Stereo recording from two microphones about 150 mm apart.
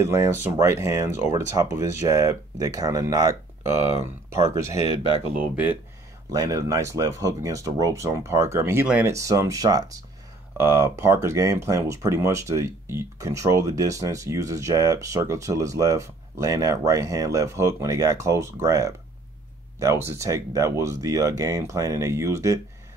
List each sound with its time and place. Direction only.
0.0 s speech: 20° right (ahead or behind)
6.3 s speech: 25° right (ahead or behind); by 9.1 s 10° right (ahead or behind)
9.1 s speech: 20° right (ahead or behind)